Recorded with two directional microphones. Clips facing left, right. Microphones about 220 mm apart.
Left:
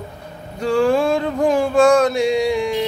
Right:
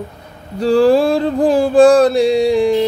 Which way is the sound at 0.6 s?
35° right (ahead or behind).